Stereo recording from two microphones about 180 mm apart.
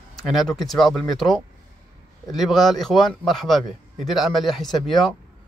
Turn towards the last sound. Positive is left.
turn(degrees=0)  # may be behind; listen again after turning